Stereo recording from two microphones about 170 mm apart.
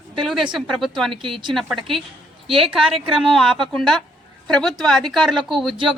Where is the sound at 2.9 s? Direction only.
30° right (ahead or behind).